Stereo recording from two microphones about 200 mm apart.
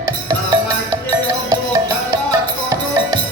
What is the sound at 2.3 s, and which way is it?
Music, 20° right (ahead or behind).